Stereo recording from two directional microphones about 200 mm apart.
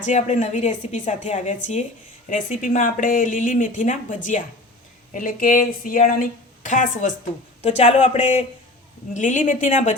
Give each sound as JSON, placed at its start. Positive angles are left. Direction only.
{"t": 0.0, "sound": "speech", "side_deg": 35}